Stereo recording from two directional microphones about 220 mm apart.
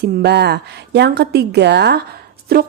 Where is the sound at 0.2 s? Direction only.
50° right (ahead or behind).